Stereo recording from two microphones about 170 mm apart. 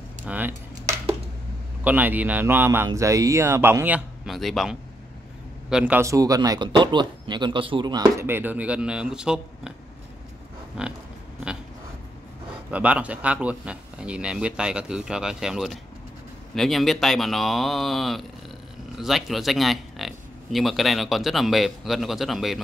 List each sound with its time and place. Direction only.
0.2 s cutlery: 10° right (ahead or behind)
1.9 s speech: 10° right (ahead or behind)
4.3 s speech: centre (ahead or behind)
10.8 s speech: 5° right (ahead or behind)
12.7 s speech: 10° right (ahead or behind)